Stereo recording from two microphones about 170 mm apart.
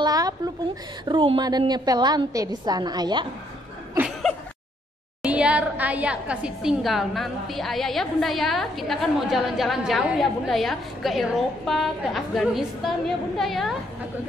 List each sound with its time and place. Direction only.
0.0 s a sound: 20° right (ahead or behind)
1.0 s a woman's voice: 30° right (ahead or behind)
5.2 s a woman's voice: 5° right (ahead or behind)